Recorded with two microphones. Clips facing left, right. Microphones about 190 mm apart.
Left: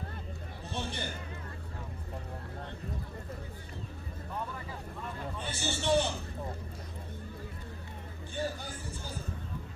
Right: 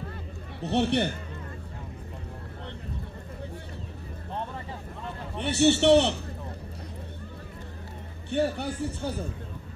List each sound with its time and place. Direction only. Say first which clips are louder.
0.6 s a man's voice: right 14 dB; 70° right (ahead or behind)
4.3 s vehicle: right 4 dB; 25° right (ahead or behind)
5.3 s a man's voice: right 18 dB; 70° right (ahead or behind)
8.3 s a man's voice: right 10 dB; 70° right (ahead or behind)